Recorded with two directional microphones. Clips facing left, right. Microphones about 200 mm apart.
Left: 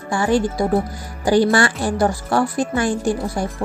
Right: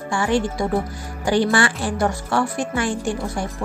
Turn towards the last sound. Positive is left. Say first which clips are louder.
# left 3 dB
turn(degrees=40)  # may be behind; listen again after turning